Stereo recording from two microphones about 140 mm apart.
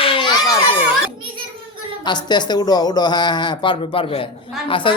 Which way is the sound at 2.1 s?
30° left (ahead or behind).